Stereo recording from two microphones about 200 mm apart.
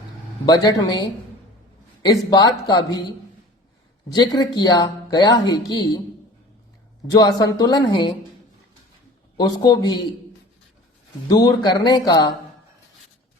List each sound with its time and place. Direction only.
0.4 s speech: 20° left (ahead or behind)
2.3 s speech: 20° left (ahead or behind)
7.1 s speech: 20° left (ahead or behind)
9.4 s speech: 20° left (ahead or behind)
11.3 s speech: 20° left (ahead or behind)